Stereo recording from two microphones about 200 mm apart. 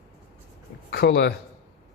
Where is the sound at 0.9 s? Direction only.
50° left (ahead or behind).